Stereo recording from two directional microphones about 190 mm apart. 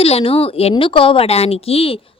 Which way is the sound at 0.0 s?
30° left (ahead or behind).